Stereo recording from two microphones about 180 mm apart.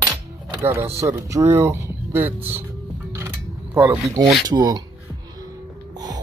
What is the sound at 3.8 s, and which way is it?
Speech, 15° right (ahead or behind).